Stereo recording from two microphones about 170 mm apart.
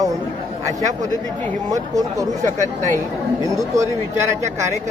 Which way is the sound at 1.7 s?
20° right (ahead or behind).